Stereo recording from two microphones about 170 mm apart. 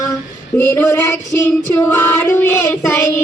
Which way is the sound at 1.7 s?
10° left (ahead or behind).